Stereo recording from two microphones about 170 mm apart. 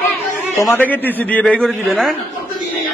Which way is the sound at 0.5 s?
15° left (ahead or behind).